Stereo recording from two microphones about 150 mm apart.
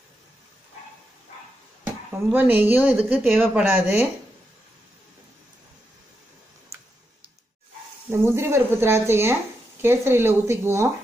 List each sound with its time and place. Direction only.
2.3 s speech: 10° right (ahead or behind)
8.1 s speech: 15° right (ahead or behind)